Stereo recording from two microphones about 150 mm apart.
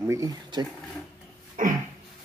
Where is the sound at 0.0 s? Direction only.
20° right (ahead or behind).